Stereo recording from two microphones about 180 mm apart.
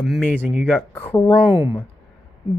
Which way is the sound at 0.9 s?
10° left (ahead or behind).